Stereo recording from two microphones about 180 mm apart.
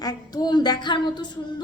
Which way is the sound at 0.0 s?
20° left (ahead or behind).